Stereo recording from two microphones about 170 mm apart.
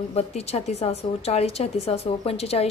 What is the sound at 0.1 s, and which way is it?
A woman's voice, 35° left (ahead or behind).